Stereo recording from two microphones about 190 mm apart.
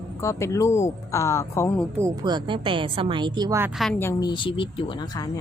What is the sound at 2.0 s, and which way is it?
A woman's voice, 20° right (ahead or behind).